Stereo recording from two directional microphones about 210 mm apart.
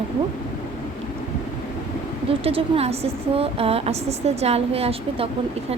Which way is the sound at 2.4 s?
25° right (ahead or behind).